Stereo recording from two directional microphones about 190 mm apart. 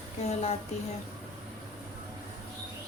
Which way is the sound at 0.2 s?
35° left (ahead or behind).